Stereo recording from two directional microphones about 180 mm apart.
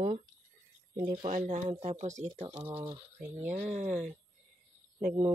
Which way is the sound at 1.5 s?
35° right (ahead or behind).